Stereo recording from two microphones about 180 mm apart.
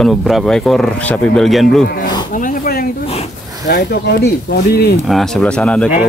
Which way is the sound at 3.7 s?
60° left (ahead or behind).